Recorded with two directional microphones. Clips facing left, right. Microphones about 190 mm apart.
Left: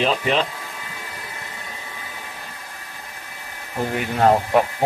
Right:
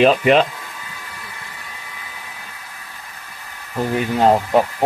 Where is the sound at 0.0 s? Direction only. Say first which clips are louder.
Right 8 dB; 65° right (ahead or behind).